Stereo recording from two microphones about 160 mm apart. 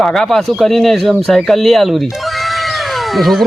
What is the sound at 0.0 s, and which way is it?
Speech, centre (ahead or behind).